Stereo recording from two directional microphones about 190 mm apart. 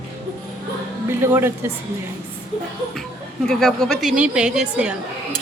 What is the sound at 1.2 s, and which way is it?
Speech, 10° right (ahead or behind).